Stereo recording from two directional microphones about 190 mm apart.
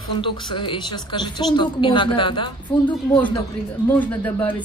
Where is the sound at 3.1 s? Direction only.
10° left (ahead or behind).